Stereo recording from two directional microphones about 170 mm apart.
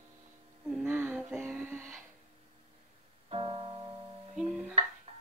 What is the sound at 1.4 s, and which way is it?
Music, 5° left (ahead or behind).